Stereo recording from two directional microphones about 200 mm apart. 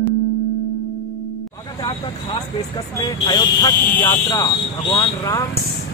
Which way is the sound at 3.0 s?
20° left (ahead or behind).